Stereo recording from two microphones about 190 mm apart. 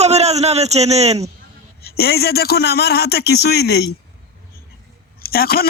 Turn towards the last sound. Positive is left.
turn(degrees=50)  # may be behind; listen again after turning